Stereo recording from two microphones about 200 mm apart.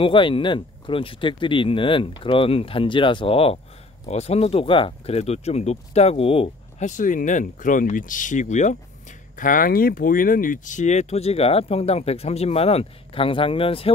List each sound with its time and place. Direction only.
0.0 s speech: 25° left (ahead or behind)